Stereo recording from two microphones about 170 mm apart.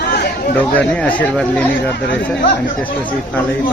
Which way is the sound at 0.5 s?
10° left (ahead or behind).